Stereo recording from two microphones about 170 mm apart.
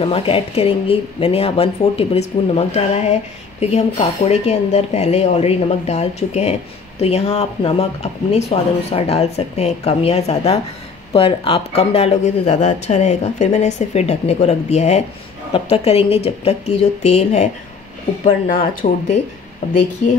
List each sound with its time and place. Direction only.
0.0 s speech: 35° left (ahead or behind); by 19.1 s 50° left (ahead or behind)